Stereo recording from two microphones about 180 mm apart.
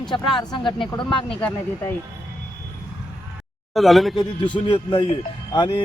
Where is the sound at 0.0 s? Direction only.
25° left (ahead or behind).